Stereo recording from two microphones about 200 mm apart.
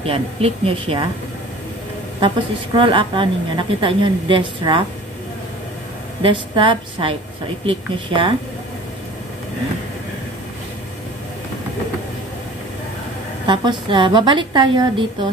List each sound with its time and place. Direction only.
0.0 s a woman's voice: 30° right (ahead or behind)
2.1 s a woman's voice: 25° right (ahead or behind)
6.2 s a woman's voice: 25° right (ahead or behind)
13.5 s a woman's voice: 25° right (ahead or behind)